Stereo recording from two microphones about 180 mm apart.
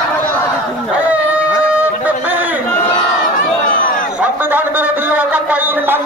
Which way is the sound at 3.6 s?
50° left (ahead or behind).